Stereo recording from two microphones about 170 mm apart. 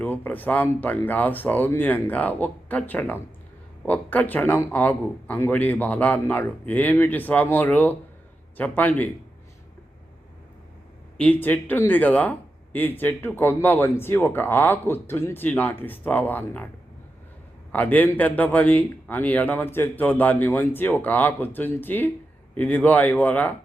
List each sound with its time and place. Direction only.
0.0 s speech: 10° left (ahead or behind)
11.2 s speech: 10° left (ahead or behind)
17.7 s speech: 10° left (ahead or behind)